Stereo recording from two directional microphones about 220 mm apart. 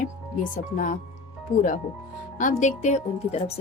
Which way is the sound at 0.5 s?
35° left (ahead or behind).